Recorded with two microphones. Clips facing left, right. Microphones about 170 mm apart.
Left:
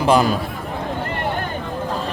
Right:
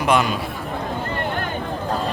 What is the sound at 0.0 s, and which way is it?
Speech, 35° left (ahead or behind).